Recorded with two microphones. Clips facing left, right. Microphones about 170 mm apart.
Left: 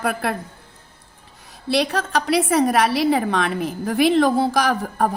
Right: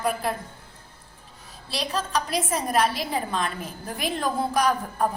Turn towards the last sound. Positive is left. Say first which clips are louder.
# left 3 dB
turn(degrees=75)  # may be behind; listen again after turning